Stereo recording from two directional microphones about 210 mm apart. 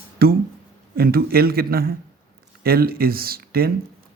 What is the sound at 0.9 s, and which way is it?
Speech, 45° right (ahead or behind).